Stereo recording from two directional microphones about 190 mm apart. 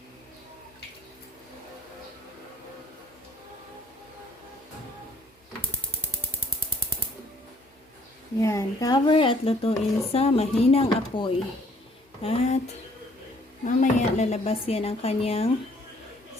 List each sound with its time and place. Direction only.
8.4 s speech: 15° left (ahead or behind); by 12.5 s 30° left (ahead or behind)
13.7 s speech: 40° left (ahead or behind)